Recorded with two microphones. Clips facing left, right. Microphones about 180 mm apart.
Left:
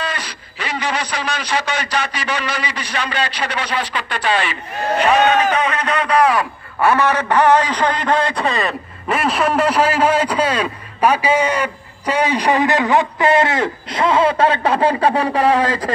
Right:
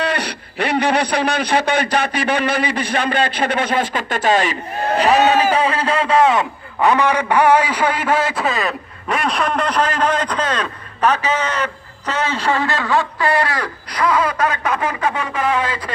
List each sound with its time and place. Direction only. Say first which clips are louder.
0.0 s a man's voice: right 5 dB; 65° right (ahead or behind); by 15.9 s 40° left (ahead or behind)